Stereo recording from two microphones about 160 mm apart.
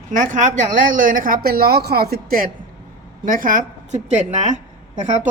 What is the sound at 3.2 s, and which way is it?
A woman's voice, 60° right (ahead or behind).